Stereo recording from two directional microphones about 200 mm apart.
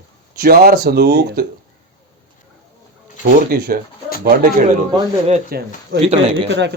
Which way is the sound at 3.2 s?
50° right (ahead or behind).